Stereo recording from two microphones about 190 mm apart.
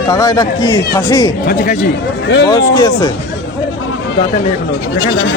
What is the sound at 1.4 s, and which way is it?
Speech, 50° left (ahead or behind).